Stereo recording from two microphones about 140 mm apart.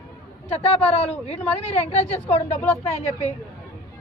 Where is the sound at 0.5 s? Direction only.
50° left (ahead or behind).